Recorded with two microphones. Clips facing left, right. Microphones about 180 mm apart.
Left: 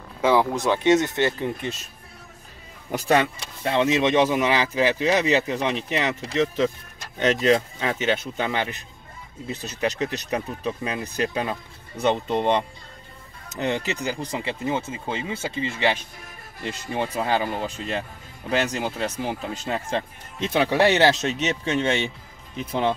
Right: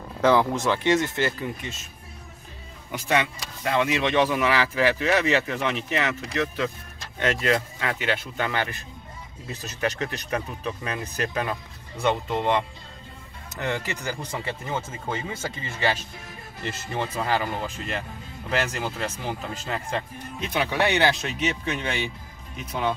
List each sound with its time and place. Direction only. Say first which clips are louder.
0.2 s speech: even; 10° left (ahead or behind)
2.9 s speech: left 4 dB; 35° left (ahead or behind); by 12.5 s 20° left (ahead or behind)
13.6 s speech: left 4 dB; 20° left (ahead or behind)
20.3 s speech: left 5 dB; 30° left (ahead or behind)